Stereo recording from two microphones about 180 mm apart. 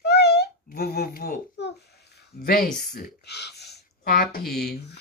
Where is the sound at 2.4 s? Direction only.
55° left (ahead or behind).